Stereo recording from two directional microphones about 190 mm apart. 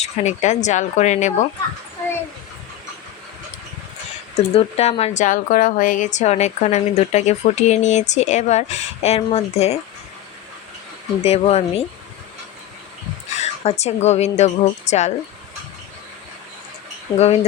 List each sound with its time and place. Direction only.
0.0 s a woman's voice: 35° left (ahead or behind)
4.4 s a woman's voice: 30° left (ahead or behind)
11.2 s a woman's voice: 35° left (ahead or behind)
13.4 s a woman's voice: 35° left (ahead or behind)
17.1 s speech: 30° left (ahead or behind)